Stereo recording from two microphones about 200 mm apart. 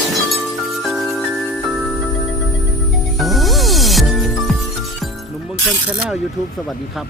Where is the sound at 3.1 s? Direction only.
Centre (ahead or behind).